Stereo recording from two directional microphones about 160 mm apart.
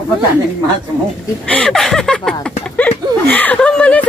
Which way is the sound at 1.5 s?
5° left (ahead or behind).